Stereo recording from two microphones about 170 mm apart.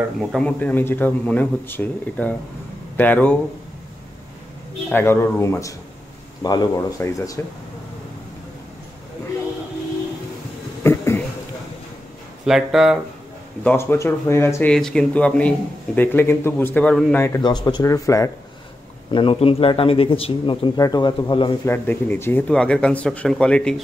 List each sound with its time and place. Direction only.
0.2 s speech: centre (ahead or behind)
4.8 s speech: 15° left (ahead or behind)
10.8 s a sound: 15° left (ahead or behind)
12.4 s speech: centre (ahead or behind)
13.7 s speech: 15° left (ahead or behind)
17.4 s speech: 25° left (ahead or behind)
19.0 s speech: 30° left (ahead or behind)
21.6 s speech: 10° left (ahead or behind)